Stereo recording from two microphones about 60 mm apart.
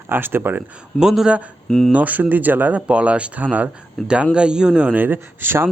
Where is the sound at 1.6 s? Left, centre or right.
Centre.